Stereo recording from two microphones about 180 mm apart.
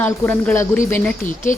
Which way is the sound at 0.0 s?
10° left (ahead or behind).